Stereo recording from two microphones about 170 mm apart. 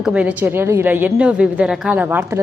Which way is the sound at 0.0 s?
5° right (ahead or behind).